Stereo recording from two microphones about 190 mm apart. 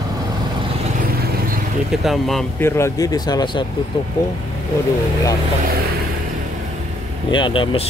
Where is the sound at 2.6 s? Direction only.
15° left (ahead or behind).